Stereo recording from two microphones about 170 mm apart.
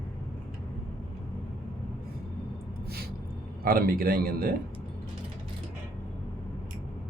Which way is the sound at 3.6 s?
60° right (ahead or behind).